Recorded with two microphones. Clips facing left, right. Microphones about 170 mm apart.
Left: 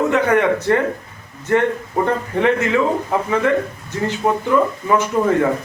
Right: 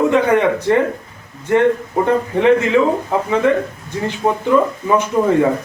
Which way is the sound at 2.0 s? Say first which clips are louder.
Right 5 dB; 15° right (ahead or behind).